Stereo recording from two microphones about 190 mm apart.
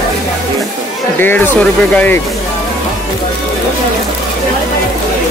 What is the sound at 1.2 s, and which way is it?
Speech, 10° left (ahead or behind).